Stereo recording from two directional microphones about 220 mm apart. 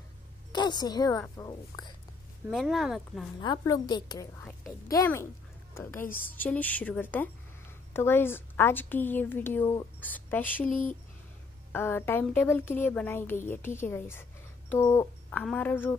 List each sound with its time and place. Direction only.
0.5 s a woman's voice: 20° left (ahead or behind)
2.5 s speech: centre (ahead or behind)
3.3 s a woman's voice: 15° left (ahead or behind)
11.7 s a woman's voice: 10° left (ahead or behind)
14.7 s a sound: 10° left (ahead or behind)
15.4 s a woman's voice: 5° left (ahead or behind)